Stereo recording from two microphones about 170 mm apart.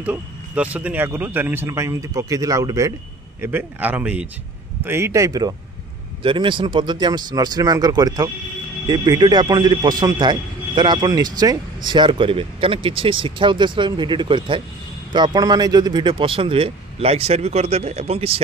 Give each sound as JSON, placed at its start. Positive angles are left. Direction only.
{"t": 0.0, "sound": "a man's voice", "side_deg": -5}